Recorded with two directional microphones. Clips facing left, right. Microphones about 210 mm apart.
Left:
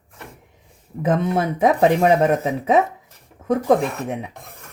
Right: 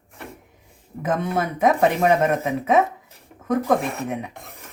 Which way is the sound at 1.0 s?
30° left (ahead or behind).